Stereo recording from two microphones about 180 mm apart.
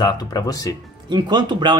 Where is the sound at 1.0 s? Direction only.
25° right (ahead or behind).